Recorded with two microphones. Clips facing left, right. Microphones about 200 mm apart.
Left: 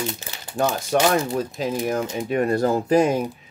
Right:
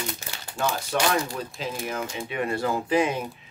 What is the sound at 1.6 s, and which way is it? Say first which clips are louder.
Speech: left 6 dB; 45° left (ahead or behind).